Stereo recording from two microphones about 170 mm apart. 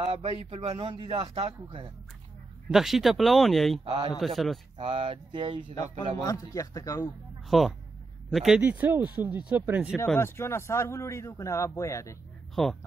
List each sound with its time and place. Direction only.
0.0 s a man's voice: 35° right (ahead or behind)
2.7 s speech: centre (ahead or behind)
3.8 s a man's voice: 25° right (ahead or behind)
5.8 s speech: 20° left (ahead or behind)
7.4 s speech: centre (ahead or behind)
10.1 s a man's voice: 15° left (ahead or behind)
12.6 s speech: centre (ahead or behind)